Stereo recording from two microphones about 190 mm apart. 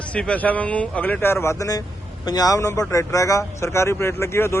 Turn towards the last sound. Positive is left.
turn(degrees=15)  # may be behind; listen again after turning